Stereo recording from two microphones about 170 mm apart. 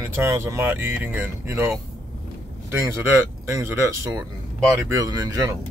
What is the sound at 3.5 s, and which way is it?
Speech, 15° right (ahead or behind).